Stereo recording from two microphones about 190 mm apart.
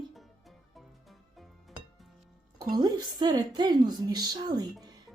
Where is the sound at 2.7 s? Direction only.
20° right (ahead or behind).